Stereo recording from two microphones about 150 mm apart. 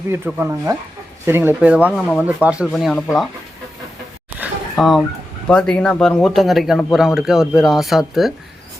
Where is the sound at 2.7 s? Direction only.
5° left (ahead or behind).